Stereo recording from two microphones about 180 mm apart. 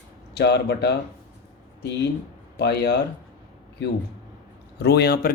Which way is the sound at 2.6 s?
70° left (ahead or behind).